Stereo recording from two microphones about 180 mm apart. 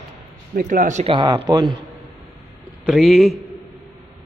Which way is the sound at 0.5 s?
50° right (ahead or behind).